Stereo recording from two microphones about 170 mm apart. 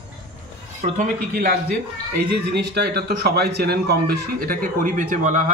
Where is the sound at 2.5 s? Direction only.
75° right (ahead or behind).